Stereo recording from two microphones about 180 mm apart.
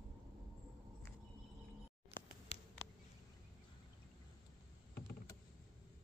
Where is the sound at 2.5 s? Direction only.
35° left (ahead or behind).